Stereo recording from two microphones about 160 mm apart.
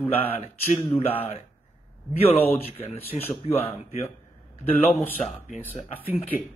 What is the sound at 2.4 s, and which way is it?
Speech, 10° left (ahead or behind).